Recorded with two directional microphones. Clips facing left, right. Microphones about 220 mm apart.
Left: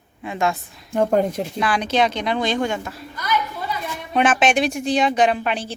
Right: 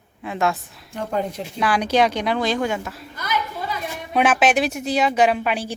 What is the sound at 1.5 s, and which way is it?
A woman's voice, 10° right (ahead or behind).